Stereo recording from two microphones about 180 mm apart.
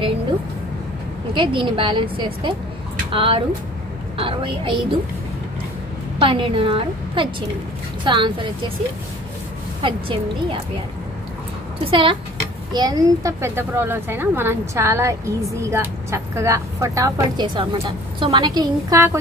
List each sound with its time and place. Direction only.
1.3 s a woman's voice: 25° right (ahead or behind)
6.1 s a woman's voice: 30° right (ahead or behind)
9.8 s a woman's voice: 30° right (ahead or behind)
11.8 s a woman's voice: 30° right (ahead or behind)